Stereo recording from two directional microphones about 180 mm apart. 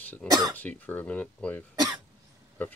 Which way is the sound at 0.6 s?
10° left (ahead or behind).